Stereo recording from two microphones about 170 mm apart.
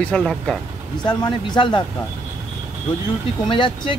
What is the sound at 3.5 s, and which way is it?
Speech, 30° left (ahead or behind).